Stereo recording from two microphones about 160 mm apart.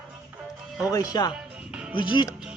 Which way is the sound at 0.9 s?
25° left (ahead or behind).